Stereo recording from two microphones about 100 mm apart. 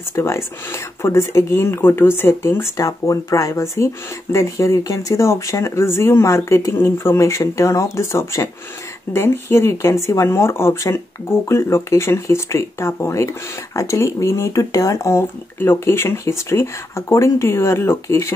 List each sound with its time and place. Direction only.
0.1 s speech: 25° left (ahead or behind)